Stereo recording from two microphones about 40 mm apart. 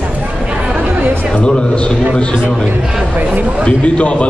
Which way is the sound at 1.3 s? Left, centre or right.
Left.